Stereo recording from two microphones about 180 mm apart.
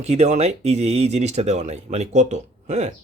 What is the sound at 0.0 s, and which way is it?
Speech, 40° right (ahead or behind).